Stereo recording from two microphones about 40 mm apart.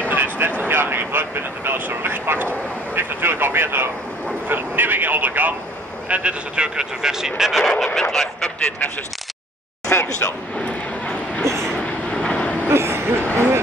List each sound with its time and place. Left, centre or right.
0.1 s vehicle: right
4.5 s vehicle: right
6.0 s speech: right; by 7.6 s centre
8.0 s speech: centre
9.9 s speech: left
10.6 s vehicle: left
11.4 s vehicle: centre
11.8 s vehicle: left
12.6 s a sound: right
13.2 s music: left